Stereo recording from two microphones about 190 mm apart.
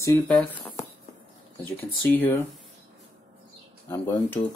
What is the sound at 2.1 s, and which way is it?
Speech, 10° left (ahead or behind).